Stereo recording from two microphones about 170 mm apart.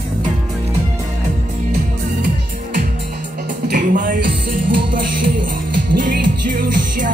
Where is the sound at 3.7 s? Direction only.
50° right (ahead or behind).